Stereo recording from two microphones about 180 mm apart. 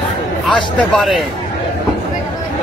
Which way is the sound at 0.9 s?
Centre (ahead or behind).